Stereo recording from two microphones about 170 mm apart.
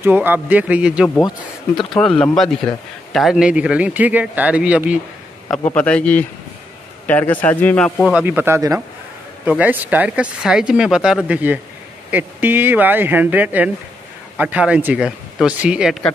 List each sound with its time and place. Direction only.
0.0 s speech: 10° right (ahead or behind)
2.0 s a man's voice: 5° left (ahead or behind)
5.8 s speech: 5° left (ahead or behind)
8.1 s speech: 10° right (ahead or behind)